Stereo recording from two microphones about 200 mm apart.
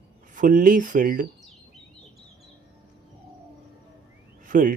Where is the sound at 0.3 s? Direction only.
40° right (ahead or behind).